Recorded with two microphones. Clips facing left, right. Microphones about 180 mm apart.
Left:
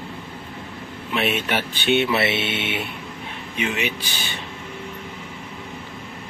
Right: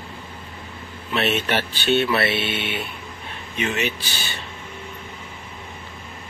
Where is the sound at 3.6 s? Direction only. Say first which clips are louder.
Right 1 dB; 10° left (ahead or behind).